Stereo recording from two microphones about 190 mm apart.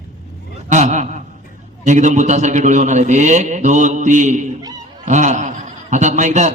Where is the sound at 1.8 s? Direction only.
40° right (ahead or behind).